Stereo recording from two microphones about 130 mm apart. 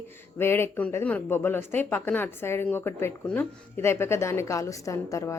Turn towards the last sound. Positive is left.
turn(degrees=25)  # may be behind; listen again after turning